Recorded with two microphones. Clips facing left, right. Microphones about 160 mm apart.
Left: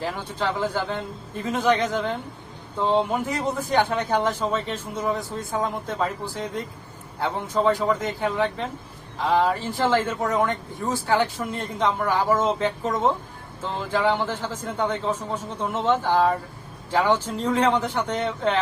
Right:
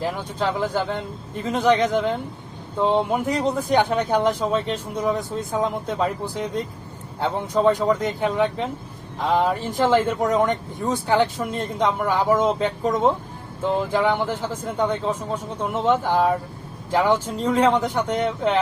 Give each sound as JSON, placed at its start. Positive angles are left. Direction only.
{"t": 0.0, "sound": "speech", "side_deg": -15}